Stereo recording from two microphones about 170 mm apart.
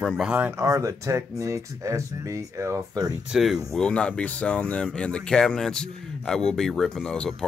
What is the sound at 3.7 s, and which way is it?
Speech, 5° left (ahead or behind).